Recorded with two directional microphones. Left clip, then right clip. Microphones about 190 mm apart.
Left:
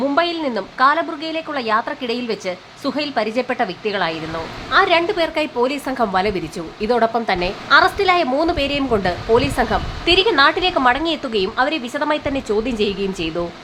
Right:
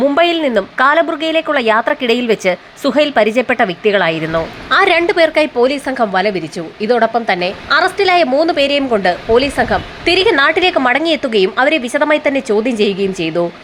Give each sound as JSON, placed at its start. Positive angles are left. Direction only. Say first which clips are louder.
{"t": 0.1, "sound": "a woman's voice", "louder": "right 7 dB", "side_deg": -20}
{"t": 4.7, "sound": "a woman's voice", "louder": "right 4 dB", "side_deg": -30}
{"t": 10.1, "sound": "a woman's voice", "louder": "right 3 dB", "side_deg": -20}